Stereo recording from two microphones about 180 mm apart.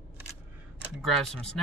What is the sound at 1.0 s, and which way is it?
Speech, centre (ahead or behind).